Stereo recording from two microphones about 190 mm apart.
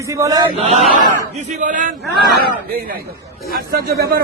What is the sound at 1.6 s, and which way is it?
Speech, 45° right (ahead or behind).